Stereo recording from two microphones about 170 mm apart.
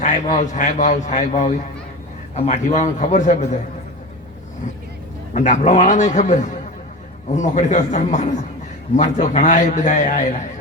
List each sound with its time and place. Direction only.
0.0 s a man's voice: 45° left (ahead or behind)
5.3 s a man's voice: 45° left (ahead or behind)